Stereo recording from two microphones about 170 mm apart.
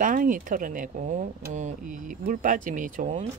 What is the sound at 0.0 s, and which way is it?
Speech, 50° right (ahead or behind).